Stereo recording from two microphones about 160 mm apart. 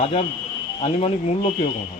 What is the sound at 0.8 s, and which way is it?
Speech, 40° left (ahead or behind).